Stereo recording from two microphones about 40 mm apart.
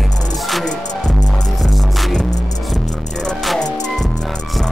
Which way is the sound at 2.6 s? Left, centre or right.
Centre.